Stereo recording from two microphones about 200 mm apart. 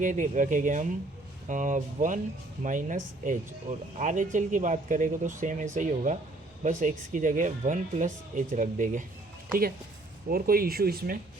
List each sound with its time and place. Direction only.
0.0 s speech: 40° right (ahead or behind)
10.2 s speech: 50° right (ahead or behind)